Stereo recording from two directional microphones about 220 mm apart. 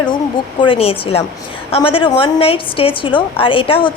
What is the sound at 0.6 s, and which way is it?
A woman's voice, 25° left (ahead or behind).